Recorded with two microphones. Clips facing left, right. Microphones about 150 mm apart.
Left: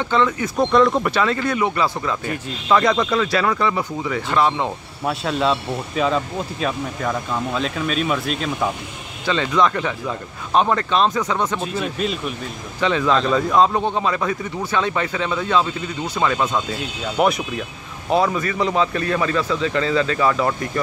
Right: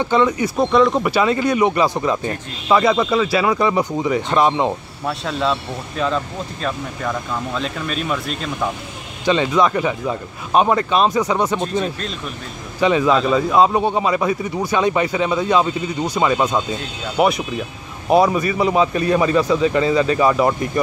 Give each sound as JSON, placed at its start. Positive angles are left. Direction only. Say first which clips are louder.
{"t": 0.0, "sound": "speech", "louder": "right 3 dB", "side_deg": -15}
{"t": 0.7, "sound": "speech", "louder": "even", "side_deg": 0}
{"t": 2.7, "sound": "speech", "louder": "right 2 dB", "side_deg": -5}
{"t": 5.0, "sound": "speech", "louder": "left 1 dB", "side_deg": 5}
{"t": 9.2, "sound": "speech", "louder": "right 3 dB", "side_deg": -15}
{"t": 11.6, "sound": "speech", "louder": "right 1 dB", "side_deg": 5}
{"t": 12.8, "sound": "speech", "louder": "right 3 dB", "side_deg": -15}
{"t": 17.2, "sound": "speech", "louder": "right 2 dB", "side_deg": -5}